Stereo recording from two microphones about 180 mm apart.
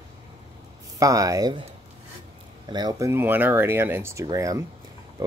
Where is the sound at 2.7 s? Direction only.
20° right (ahead or behind).